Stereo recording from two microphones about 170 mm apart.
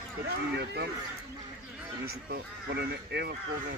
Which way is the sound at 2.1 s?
70° right (ahead or behind).